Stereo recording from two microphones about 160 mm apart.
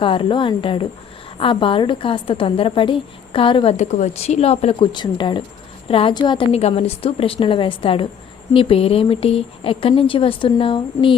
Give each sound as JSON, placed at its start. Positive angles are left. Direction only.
{"t": 0.0, "sound": "a woman's voice", "side_deg": 30}
{"t": 3.8, "sound": "a woman's voice", "side_deg": 45}